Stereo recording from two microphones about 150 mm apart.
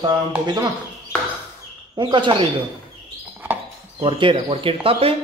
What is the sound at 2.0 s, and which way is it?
Speech, 30° right (ahead or behind).